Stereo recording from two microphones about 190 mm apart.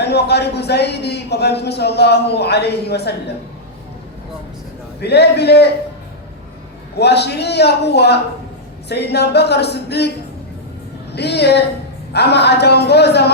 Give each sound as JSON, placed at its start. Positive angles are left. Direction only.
{"t": 0.0, "sound": "speech", "side_deg": 60}
{"t": 4.9, "sound": "speech", "side_deg": 60}
{"t": 6.9, "sound": "speech", "side_deg": 60}
{"t": 11.1, "sound": "speech", "side_deg": 60}